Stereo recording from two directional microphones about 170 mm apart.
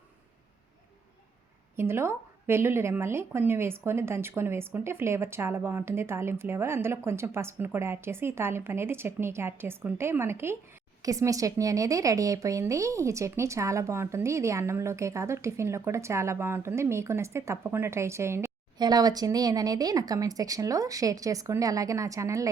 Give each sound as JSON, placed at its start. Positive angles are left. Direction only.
{"t": 1.7, "sound": "speech", "side_deg": -15}